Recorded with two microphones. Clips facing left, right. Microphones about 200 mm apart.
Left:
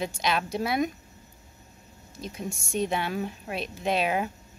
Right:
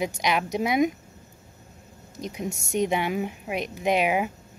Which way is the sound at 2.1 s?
15° right (ahead or behind).